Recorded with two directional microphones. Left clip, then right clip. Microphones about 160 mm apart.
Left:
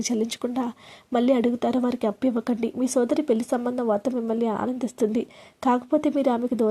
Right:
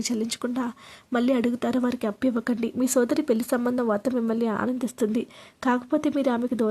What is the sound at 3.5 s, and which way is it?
Speech, 25° right (ahead or behind).